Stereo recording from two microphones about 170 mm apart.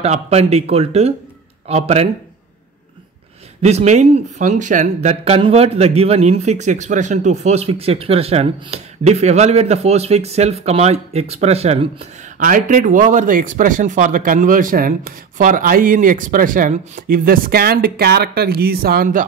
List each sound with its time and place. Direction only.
0.0 s speech: 40° right (ahead or behind)
3.6 s speech: 40° right (ahead or behind)
12.4 s speech: 50° right (ahead or behind)